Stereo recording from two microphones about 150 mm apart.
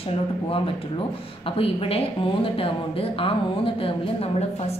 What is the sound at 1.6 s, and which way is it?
Speech, 40° left (ahead or behind).